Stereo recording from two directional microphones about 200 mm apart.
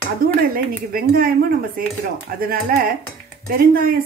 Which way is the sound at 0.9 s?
50° right (ahead or behind).